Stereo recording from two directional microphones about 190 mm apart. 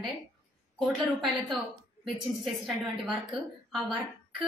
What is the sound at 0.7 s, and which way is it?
A woman's voice, centre (ahead or behind).